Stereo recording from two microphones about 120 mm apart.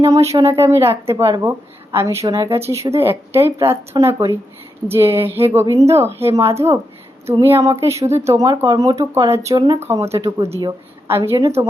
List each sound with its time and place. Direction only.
0.0 s speech: 25° right (ahead or behind)
3.9 s speech: 35° right (ahead or behind)
4.9 s speech: 20° right (ahead or behind)